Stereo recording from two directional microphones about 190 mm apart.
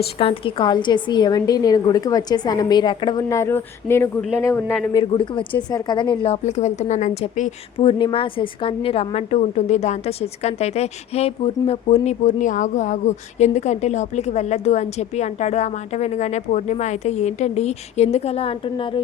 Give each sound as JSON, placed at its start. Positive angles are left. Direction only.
{"t": 0.2, "sound": "a woman's voice", "side_deg": 30}
{"t": 4.9, "sound": "a woman's voice", "side_deg": 25}